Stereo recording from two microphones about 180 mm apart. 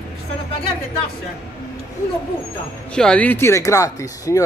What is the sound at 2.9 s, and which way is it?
Speech, 5° left (ahead or behind).